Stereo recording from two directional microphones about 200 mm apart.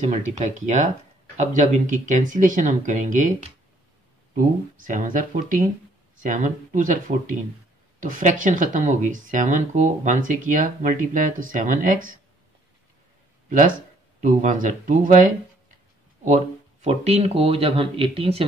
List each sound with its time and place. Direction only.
0.0 s speech: 35° right (ahead or behind)
4.8 s speech: 40° right (ahead or behind)
13.5 s speech: 40° right (ahead or behind)
16.8 s speech: 35° right (ahead or behind)